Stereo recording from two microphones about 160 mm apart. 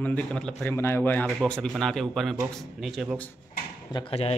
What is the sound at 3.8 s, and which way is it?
Speech, 30° left (ahead or behind).